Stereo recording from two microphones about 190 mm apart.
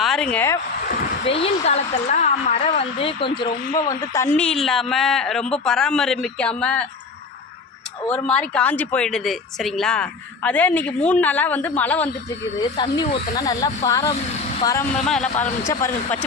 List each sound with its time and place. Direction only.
0.0 s speech: 5° left (ahead or behind)
1.2 s a woman's voice: 30° left (ahead or behind)
3.8 s speech: 15° left (ahead or behind)
8.0 s a woman's voice: 5° left (ahead or behind)
12.5 s a woman's voice: 25° left (ahead or behind)
15.0 s speech: centre (ahead or behind)
15.6 s a woman's voice: 15° left (ahead or behind)